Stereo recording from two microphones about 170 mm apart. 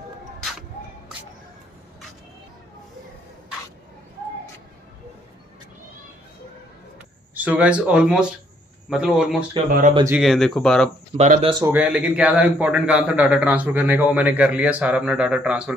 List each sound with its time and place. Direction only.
0.4 s music: centre (ahead or behind)
7.3 s a man's voice: 10° right (ahead or behind)
9.7 s speech: 55° right (ahead or behind)
10.2 s speech: centre (ahead or behind)
11.1 s speech: 50° right (ahead or behind)
11.6 s a man's voice: 10° right (ahead or behind)